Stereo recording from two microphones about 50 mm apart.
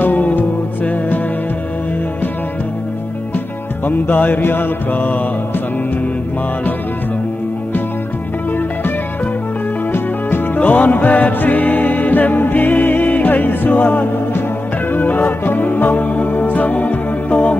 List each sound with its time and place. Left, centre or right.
0.0 s music: left
3.8 s music: left
9.9 s music: left
10.6 s music: left